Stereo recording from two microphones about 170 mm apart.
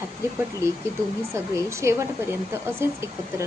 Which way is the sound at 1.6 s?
15° right (ahead or behind).